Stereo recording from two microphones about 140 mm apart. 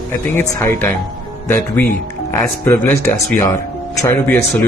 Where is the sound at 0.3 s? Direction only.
15° left (ahead or behind).